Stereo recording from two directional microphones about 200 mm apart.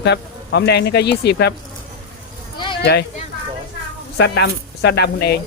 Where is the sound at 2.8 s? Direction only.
55° left (ahead or behind).